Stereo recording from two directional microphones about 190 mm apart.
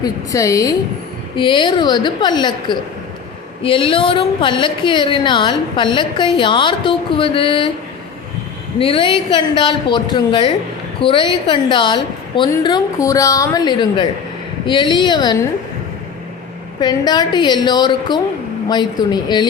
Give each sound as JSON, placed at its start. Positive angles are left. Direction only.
{"t": 0.0, "sound": "a woman's voice", "side_deg": 20}
{"t": 8.8, "sound": "a woman's voice", "side_deg": 25}
{"t": 16.8, "sound": "a woman's voice", "side_deg": 20}